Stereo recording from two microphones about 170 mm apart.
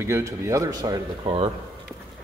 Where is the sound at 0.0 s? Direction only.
15° right (ahead or behind).